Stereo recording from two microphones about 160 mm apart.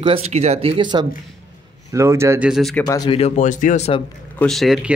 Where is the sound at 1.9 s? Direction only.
15° right (ahead or behind).